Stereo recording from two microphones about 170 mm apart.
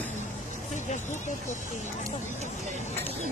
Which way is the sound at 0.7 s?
45° left (ahead or behind).